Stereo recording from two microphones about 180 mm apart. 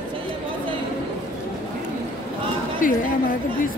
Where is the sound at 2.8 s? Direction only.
50° left (ahead or behind).